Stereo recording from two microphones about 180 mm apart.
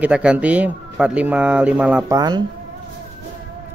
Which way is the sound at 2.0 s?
20° right (ahead or behind).